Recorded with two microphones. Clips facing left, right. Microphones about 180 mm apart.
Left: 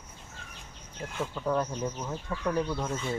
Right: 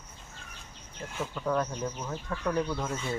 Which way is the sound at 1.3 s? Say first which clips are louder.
Even; 10° left (ahead or behind).